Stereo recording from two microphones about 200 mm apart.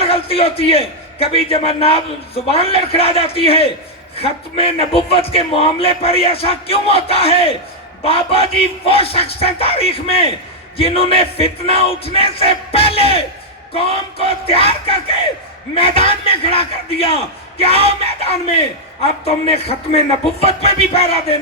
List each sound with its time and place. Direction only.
0.0 s a man's voice: 30° left (ahead or behind)